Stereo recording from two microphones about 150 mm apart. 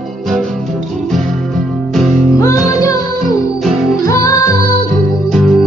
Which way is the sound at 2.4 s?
20° left (ahead or behind).